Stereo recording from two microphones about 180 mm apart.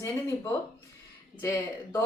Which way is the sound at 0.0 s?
15° left (ahead or behind).